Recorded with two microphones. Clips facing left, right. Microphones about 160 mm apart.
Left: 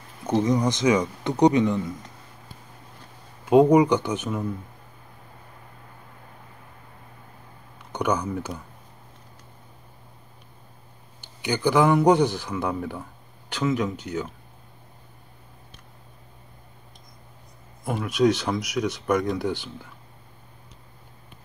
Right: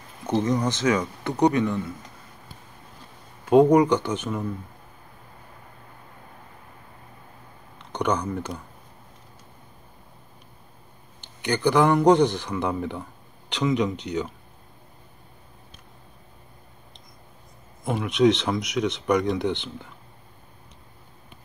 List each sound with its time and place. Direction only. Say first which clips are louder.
0.3 s speech: left 1 dB; 15° left (ahead or behind)
3.4 s speech: even; 10° left (ahead or behind)
7.9 s speech: even; 10° left (ahead or behind)
11.1 s speech: right 1 dB; 10° left (ahead or behind)
17.8 s speech: right 1 dB; centre (ahead or behind)